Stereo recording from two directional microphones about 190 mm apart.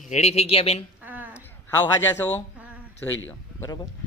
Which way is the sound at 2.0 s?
10° left (ahead or behind).